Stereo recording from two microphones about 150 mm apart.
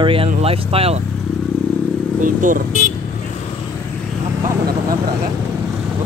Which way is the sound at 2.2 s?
65° right (ahead or behind).